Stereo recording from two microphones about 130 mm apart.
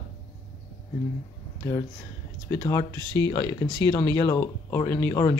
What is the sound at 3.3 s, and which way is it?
Speech, 25° left (ahead or behind).